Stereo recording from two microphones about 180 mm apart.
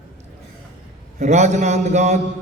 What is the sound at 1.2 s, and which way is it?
A man's voice, 40° right (ahead or behind).